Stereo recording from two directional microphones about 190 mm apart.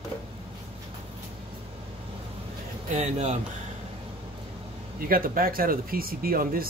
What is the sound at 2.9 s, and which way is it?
Speech, 35° right (ahead or behind).